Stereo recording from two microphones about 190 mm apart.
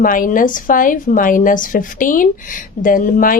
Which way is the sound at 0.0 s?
45° left (ahead or behind).